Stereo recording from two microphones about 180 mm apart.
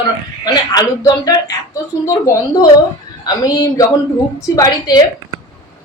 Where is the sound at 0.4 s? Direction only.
20° left (ahead or behind).